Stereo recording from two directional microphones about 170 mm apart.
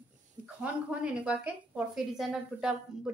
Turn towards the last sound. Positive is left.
turn(degrees=-5)  # may be behind; listen again after turning